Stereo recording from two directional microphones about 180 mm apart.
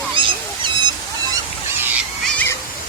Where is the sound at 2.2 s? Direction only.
10° left (ahead or behind).